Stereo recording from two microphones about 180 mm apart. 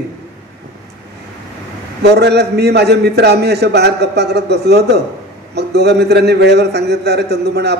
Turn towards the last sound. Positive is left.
turn(degrees=-65)  # may be behind; listen again after turning